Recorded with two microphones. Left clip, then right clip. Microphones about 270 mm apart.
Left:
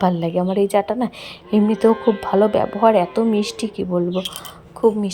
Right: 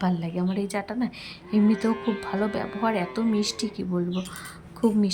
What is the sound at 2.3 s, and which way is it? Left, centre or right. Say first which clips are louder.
Speech: left 14 dB; left.